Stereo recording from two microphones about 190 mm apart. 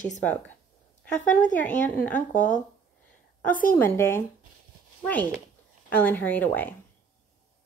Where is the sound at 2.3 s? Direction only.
40° left (ahead or behind).